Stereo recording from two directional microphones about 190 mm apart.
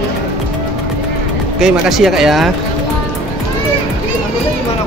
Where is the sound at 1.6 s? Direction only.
Centre (ahead or behind).